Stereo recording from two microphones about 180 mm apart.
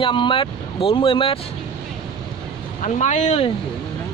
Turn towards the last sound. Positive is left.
turn(degrees=40)  # may be behind; listen again after turning